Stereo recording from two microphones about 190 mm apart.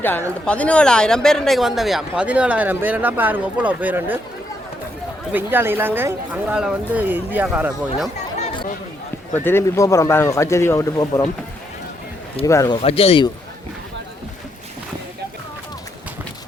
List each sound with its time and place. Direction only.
0.4 s speech: 5° left (ahead or behind); by 4.2 s 10° right (ahead or behind)
5.3 s speech: 10° right (ahead or behind)
9.3 s speech: 10° left (ahead or behind)
12.5 s speech: 15° left (ahead or behind)
12.7 s speech: 30° left (ahead or behind)